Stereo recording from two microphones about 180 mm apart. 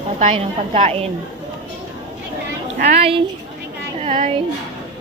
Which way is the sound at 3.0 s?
30° right (ahead or behind).